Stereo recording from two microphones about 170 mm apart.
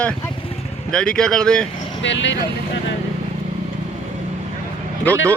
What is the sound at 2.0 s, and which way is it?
Speech, 90° left.